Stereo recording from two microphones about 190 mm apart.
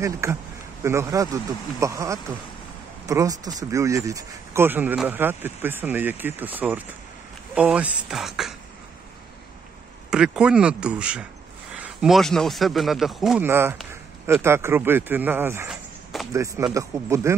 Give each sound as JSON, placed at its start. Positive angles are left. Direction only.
{"t": 0.0, "sound": "speech", "side_deg": -15}
{"t": 10.1, "sound": "speech", "side_deg": -5}
{"t": 13.5, "sound": "speech", "side_deg": -15}
{"t": 15.7, "sound": "a sound", "side_deg": 0}
{"t": 16.7, "sound": "speech", "side_deg": -15}